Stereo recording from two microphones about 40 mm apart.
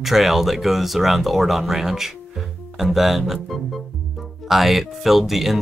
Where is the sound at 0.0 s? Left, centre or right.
Centre.